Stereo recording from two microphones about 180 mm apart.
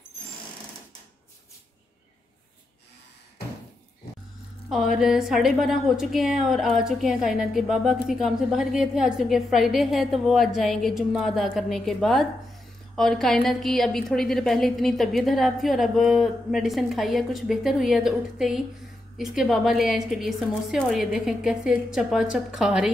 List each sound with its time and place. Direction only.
4.9 s a woman's voice: 5° right (ahead or behind)